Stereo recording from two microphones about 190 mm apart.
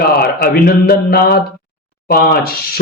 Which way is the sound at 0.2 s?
55° left (ahead or behind).